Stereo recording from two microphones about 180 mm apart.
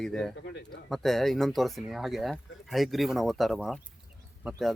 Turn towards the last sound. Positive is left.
turn(degrees=0)  # may be behind; listen again after turning